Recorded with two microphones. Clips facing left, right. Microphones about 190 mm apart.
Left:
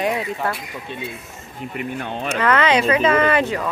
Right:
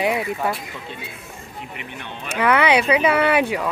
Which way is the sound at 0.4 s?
15° right (ahead or behind).